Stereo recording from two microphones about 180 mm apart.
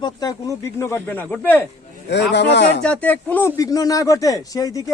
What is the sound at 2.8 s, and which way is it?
Speech, 5° left (ahead or behind).